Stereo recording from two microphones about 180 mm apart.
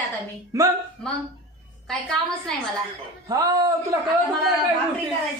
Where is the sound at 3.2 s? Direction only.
20° right (ahead or behind).